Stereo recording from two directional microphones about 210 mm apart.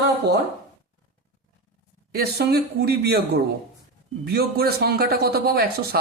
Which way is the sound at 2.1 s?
50° right (ahead or behind).